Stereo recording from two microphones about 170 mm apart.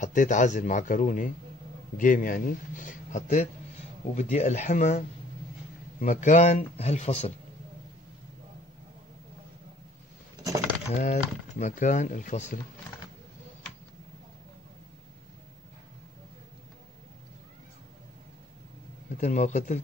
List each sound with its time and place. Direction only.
0.0 s speech: 50° left (ahead or behind)
11.0 s speech: 45° left (ahead or behind)
19.1 s speech: 45° left (ahead or behind)